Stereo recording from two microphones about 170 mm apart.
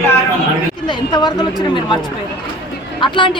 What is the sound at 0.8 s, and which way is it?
Speech, 25° left (ahead or behind).